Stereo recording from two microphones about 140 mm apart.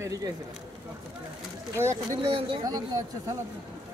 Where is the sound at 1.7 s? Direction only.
20° right (ahead or behind).